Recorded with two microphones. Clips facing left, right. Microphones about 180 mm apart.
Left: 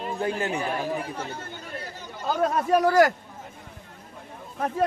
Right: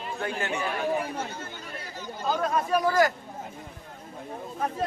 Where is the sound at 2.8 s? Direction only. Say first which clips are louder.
Left 5 dB; 65° left (ahead or behind).